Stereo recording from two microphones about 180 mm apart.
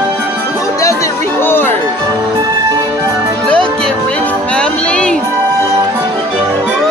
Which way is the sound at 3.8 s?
5° left (ahead or behind).